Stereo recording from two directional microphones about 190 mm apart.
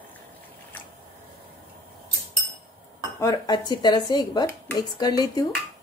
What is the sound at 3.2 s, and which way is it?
Speech, 20° left (ahead or behind).